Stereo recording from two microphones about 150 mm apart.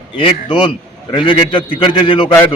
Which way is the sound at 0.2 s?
35° left (ahead or behind).